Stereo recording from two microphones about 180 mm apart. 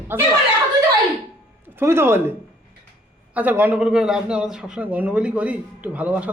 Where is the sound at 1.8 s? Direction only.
15° right (ahead or behind).